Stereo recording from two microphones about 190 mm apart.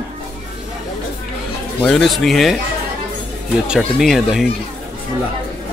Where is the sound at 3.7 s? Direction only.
Centre (ahead or behind).